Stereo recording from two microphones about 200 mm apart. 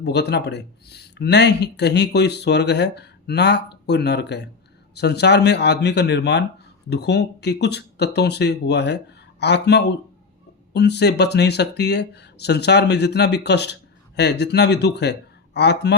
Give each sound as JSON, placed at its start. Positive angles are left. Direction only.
{"t": 0.0, "sound": "speech", "side_deg": 55}